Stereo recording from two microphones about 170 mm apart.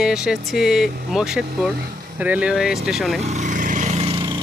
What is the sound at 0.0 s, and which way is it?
Speech, 5° right (ahead or behind).